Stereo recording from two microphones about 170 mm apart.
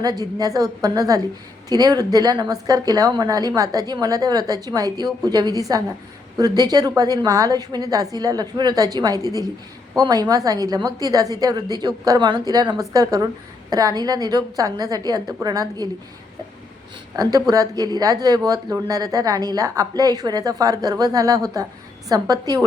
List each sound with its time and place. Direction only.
0.0 s speech: 20° right (ahead or behind)
17.2 s speech: 20° right (ahead or behind)